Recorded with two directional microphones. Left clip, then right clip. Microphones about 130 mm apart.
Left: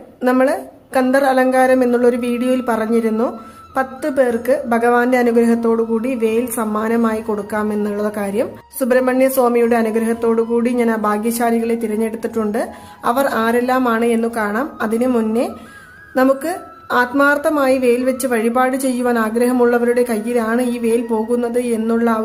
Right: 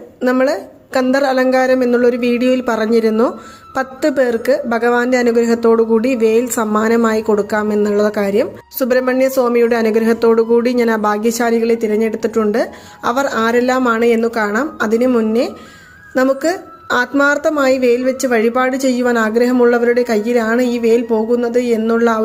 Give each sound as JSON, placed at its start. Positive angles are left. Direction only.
{"t": 0.3, "sound": "a woman's voice", "side_deg": -25}